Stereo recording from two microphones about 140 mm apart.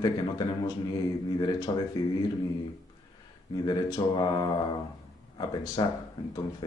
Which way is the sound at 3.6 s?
30° left (ahead or behind).